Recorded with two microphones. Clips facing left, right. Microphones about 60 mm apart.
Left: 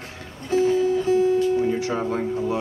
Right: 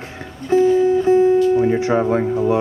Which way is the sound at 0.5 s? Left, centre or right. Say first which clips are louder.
Right 6 dB; right.